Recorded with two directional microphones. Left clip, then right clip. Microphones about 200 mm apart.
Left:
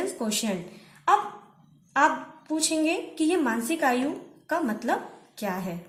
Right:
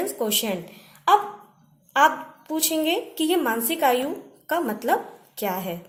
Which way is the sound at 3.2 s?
40° right (ahead or behind).